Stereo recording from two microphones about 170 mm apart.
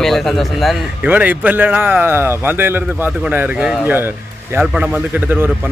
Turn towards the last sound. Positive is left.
turn(degrees=-10)  # may be behind; listen again after turning